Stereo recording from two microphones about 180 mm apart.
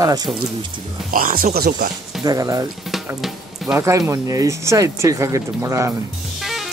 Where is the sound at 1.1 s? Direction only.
50° right (ahead or behind).